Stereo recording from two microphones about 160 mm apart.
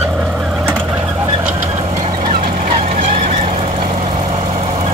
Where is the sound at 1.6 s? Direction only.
35° right (ahead or behind).